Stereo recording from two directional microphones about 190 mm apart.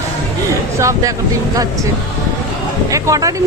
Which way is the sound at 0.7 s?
15° right (ahead or behind).